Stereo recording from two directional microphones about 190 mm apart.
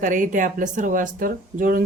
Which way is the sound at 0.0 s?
45° right (ahead or behind).